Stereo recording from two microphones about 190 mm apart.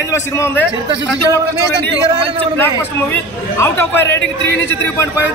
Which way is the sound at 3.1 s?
10° left (ahead or behind).